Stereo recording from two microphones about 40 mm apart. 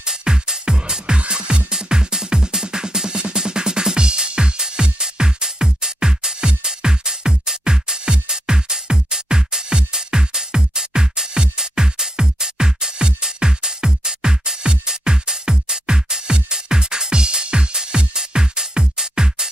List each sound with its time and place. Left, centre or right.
0.0 s music: centre